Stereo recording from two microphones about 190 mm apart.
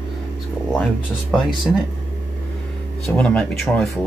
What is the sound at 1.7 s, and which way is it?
Speech, centre (ahead or behind).